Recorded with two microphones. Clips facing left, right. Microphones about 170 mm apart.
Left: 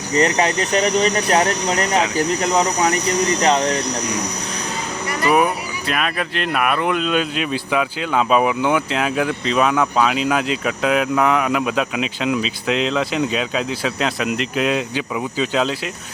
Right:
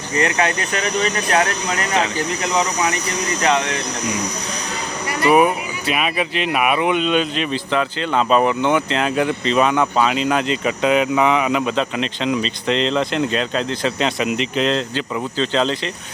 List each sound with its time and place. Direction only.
0.2 s speech: 35° left (ahead or behind)
5.2 s speech: centre (ahead or behind)